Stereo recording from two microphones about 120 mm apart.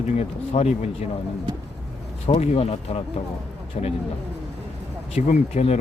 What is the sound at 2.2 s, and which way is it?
Speech, 65° left (ahead or behind).